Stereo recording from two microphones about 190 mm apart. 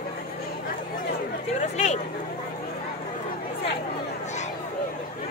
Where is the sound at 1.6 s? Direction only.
40° left (ahead or behind).